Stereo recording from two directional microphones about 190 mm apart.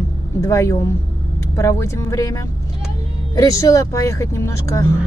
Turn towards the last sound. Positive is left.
turn(degrees=15)  # may be behind; listen again after turning